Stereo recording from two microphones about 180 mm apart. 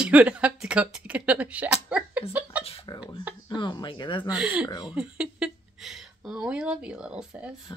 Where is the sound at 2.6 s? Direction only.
35° left (ahead or behind).